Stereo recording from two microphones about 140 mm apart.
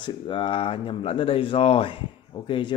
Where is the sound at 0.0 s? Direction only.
35° left (ahead or behind).